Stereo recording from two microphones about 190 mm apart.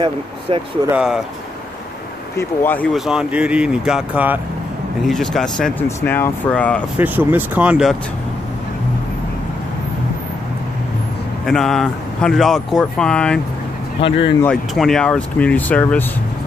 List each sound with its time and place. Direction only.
0.8 s speech: 5° right (ahead or behind)
2.3 s speech: 10° left (ahead or behind)
3.1 s speech: 5° right (ahead or behind)
7.0 s speech: 10° right (ahead or behind)
11.4 s speech: centre (ahead or behind)
14.0 s speech: 25° left (ahead or behind)
14.4 s speech: 5° left (ahead or behind)